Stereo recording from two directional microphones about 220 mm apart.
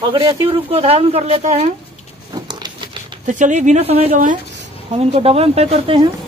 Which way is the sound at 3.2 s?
35° right (ahead or behind).